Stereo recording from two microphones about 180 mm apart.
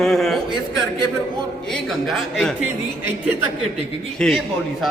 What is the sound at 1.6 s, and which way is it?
Speech, centre (ahead or behind).